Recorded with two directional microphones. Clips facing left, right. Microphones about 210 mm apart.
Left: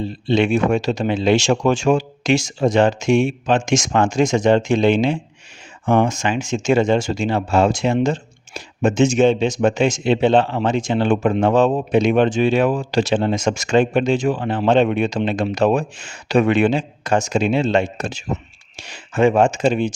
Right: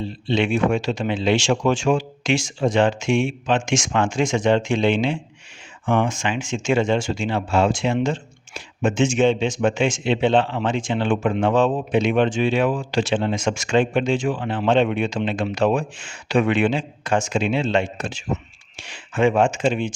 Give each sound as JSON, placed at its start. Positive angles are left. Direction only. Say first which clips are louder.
{"t": 0.0, "sound": "speech", "louder": "left 4 dB", "side_deg": 40}